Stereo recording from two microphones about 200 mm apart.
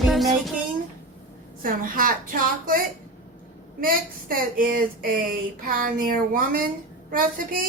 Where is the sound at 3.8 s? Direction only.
45° right (ahead or behind).